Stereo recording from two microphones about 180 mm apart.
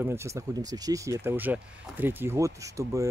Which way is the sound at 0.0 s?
15° right (ahead or behind).